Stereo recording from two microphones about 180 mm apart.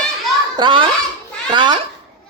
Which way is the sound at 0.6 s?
25° right (ahead or behind).